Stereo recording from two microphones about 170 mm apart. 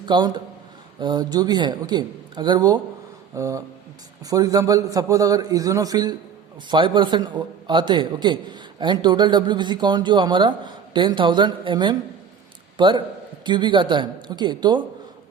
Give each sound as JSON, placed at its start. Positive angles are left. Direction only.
{"t": 0.0, "sound": "a man's voice", "side_deg": -25}